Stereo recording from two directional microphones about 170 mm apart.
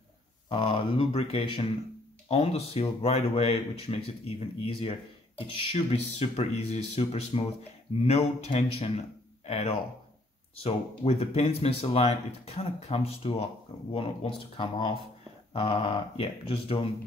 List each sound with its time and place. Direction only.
0.5 s speech: 30° left (ahead or behind)